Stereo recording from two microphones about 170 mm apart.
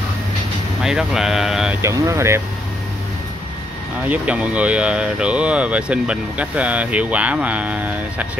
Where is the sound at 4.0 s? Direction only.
10° right (ahead or behind).